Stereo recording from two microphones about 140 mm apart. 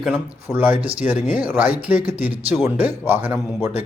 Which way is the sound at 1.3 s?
10° right (ahead or behind).